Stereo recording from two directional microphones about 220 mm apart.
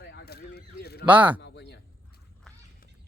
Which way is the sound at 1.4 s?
50° left (ahead or behind).